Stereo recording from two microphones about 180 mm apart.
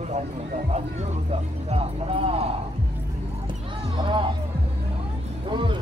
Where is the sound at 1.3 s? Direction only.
35° right (ahead or behind).